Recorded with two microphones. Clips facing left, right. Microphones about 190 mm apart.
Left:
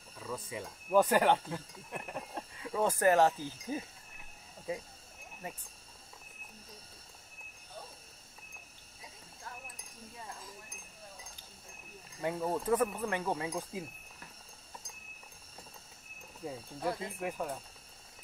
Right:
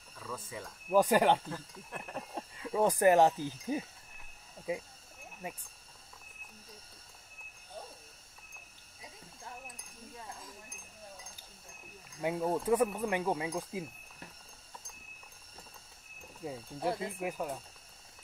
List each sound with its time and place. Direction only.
0.2 s speech: 20° left (ahead or behind)
0.9 s speech: 10° right (ahead or behind)
1.5 s speech: 15° left (ahead or behind)
2.3 s speech: 15° right (ahead or behind)
12.2 s speech: 10° right (ahead or behind)
13.5 s speech: centre (ahead or behind)
16.8 s speech: 25° right (ahead or behind)
17.2 s speech: 10° right (ahead or behind)